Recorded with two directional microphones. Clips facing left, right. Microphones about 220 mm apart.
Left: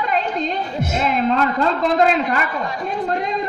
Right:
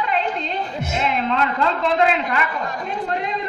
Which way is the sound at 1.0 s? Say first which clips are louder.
Left 3 dB; 40° left (ahead or behind).